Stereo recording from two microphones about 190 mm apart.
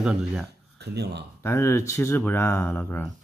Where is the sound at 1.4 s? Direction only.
15° left (ahead or behind).